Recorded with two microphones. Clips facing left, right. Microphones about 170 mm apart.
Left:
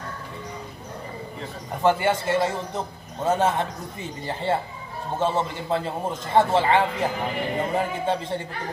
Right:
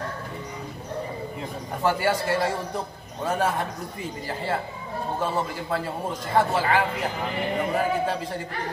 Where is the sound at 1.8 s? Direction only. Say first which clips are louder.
Left 3 dB; 20° left (ahead or behind).